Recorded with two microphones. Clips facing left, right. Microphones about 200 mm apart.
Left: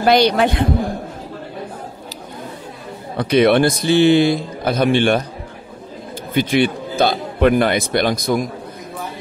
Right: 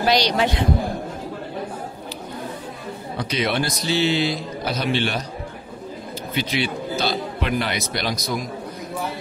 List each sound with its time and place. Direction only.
0.0 s a man's voice: 55° left (ahead or behind)
3.2 s a man's voice: 55° left (ahead or behind)
6.3 s a man's voice: 50° left (ahead or behind)